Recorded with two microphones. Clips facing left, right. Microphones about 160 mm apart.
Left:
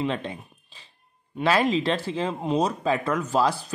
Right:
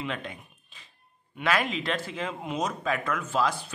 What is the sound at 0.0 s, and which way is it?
Speech, 30° left (ahead or behind).